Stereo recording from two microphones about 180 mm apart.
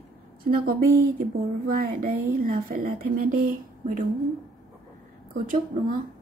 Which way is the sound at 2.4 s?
50° right (ahead or behind).